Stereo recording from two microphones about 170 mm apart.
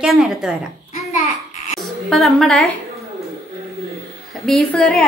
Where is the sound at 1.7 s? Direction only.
Centre (ahead or behind).